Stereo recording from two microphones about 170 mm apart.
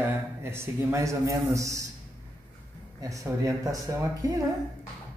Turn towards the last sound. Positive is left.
turn(degrees=-20)  # may be behind; listen again after turning